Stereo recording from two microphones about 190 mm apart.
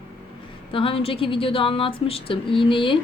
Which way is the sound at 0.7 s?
30° left (ahead or behind).